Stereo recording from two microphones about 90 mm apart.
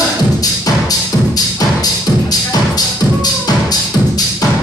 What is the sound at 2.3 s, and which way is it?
Music, 45° left (ahead or behind).